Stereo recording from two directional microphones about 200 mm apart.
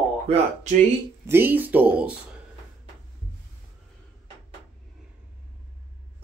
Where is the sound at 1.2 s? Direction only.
10° right (ahead or behind).